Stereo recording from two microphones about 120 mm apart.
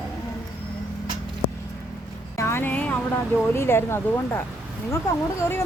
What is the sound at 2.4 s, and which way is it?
Speech, 20° left (ahead or behind).